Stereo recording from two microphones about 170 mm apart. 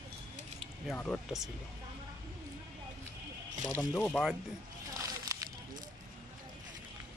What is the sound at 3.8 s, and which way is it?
Speech, 5° left (ahead or behind).